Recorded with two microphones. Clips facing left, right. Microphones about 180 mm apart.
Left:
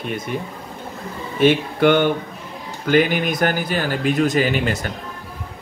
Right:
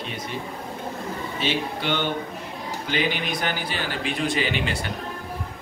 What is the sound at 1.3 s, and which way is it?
A man's voice, 55° left (ahead or behind).